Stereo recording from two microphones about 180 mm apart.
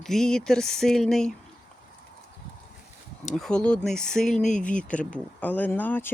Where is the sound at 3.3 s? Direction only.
Centre (ahead or behind).